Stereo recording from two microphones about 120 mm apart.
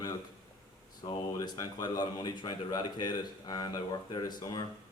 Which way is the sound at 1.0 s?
35° left (ahead or behind).